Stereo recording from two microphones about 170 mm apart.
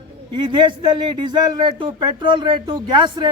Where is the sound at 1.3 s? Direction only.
25° right (ahead or behind).